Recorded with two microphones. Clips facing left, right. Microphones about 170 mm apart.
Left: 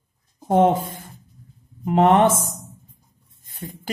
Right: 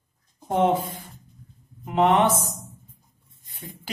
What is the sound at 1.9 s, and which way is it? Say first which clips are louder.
A man's voice: left 4 dB; 45° left (ahead or behind).